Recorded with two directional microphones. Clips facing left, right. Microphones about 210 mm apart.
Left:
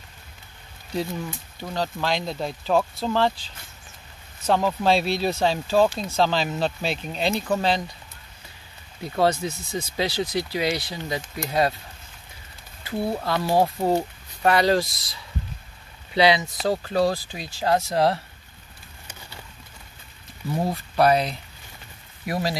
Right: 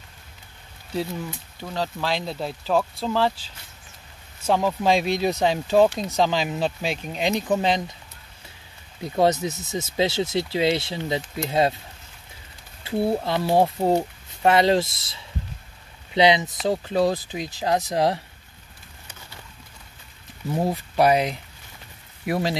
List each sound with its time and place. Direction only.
1.6 s speech: centre (ahead or behind); by 7.8 s 15° right (ahead or behind)
9.0 s speech: 20° right (ahead or behind)
12.8 s speech: 30° right (ahead or behind)
20.6 s speech: 15° right (ahead or behind)